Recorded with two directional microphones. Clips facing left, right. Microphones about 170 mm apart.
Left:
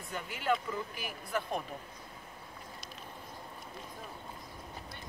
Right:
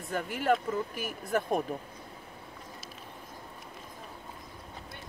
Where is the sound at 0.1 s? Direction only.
50° right (ahead or behind).